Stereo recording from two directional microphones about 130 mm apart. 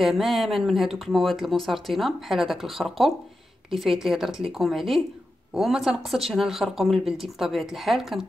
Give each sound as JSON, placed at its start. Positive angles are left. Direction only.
{"t": 0.0, "sound": "speech", "side_deg": 0}